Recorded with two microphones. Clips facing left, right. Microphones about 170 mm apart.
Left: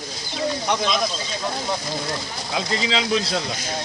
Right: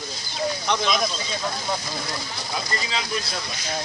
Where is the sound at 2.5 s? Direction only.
90° left.